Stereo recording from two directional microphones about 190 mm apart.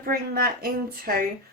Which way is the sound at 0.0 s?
50° right (ahead or behind).